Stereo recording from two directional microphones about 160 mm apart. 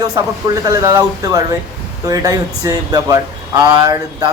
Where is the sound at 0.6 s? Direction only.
20° right (ahead or behind).